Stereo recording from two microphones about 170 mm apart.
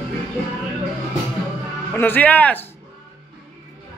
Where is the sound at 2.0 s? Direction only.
10° left (ahead or behind).